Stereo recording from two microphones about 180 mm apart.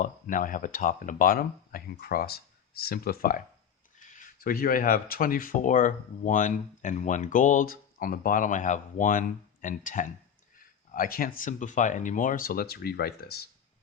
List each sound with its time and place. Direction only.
0.0 s speech: 45° left (ahead or behind)